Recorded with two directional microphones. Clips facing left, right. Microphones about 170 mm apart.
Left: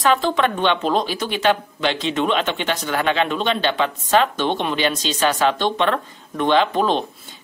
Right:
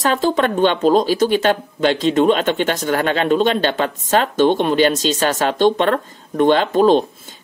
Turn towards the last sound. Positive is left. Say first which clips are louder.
# right 8 dB
turn(degrees=-45)  # may be behind; listen again after turning